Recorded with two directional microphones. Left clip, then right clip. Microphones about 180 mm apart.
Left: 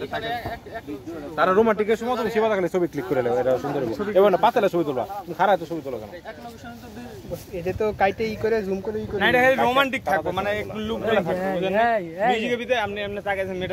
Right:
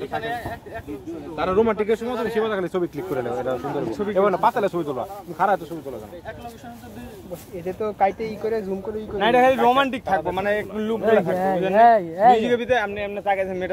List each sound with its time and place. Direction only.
1.3 s a man's voice: 25° left (ahead or behind); by 5.6 s 40° left (ahead or behind)
7.6 s speech: 50° left (ahead or behind)
9.2 s speech: 50° right (ahead or behind)
11.3 s speech: 20° right (ahead or behind)
12.4 s speech: 55° right (ahead or behind)